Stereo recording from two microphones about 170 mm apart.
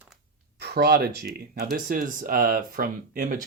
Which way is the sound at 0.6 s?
70° right (ahead or behind).